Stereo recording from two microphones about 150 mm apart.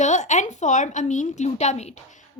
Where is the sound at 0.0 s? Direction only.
50° left (ahead or behind).